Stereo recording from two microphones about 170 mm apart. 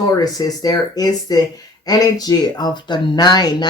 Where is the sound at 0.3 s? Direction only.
20° left (ahead or behind).